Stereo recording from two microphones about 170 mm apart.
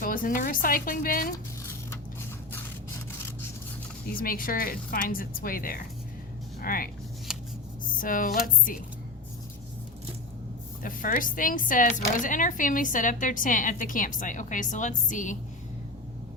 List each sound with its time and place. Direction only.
0.0 s a woman's voice: 55° left (ahead or behind)
4.2 s a woman's voice: 55° left (ahead or behind)
7.9 s speech: 55° left (ahead or behind)
10.8 s speech: 55° left (ahead or behind)